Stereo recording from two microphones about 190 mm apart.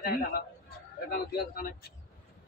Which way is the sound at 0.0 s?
55° left (ahead or behind).